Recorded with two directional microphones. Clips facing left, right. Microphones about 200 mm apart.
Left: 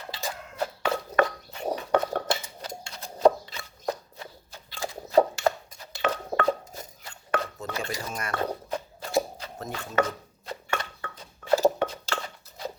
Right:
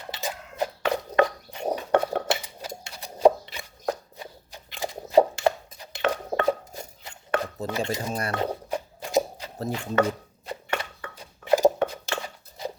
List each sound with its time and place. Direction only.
0.1 s a sound: 20° right (ahead or behind)
1.7 s cutlery: 10° right (ahead or behind)
2.3 s a sound: 15° right (ahead or behind)
5.8 s dishes: 15° right (ahead or behind)
7.7 s speech: 25° right (ahead or behind)
8.4 s music: 15° right (ahead or behind)
9.6 s chopping: 35° right (ahead or behind)
9.8 s chopping: 15° right (ahead or behind)